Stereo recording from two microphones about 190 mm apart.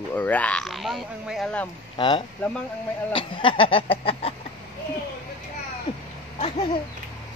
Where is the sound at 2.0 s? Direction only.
25° left (ahead or behind).